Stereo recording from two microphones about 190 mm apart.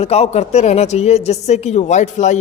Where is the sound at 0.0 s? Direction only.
35° left (ahead or behind).